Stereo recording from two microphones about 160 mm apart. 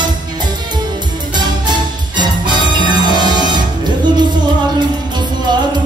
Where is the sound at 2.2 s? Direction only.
30° right (ahead or behind).